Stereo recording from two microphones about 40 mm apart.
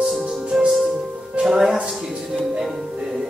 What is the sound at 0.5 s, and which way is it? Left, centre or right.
Speech, centre.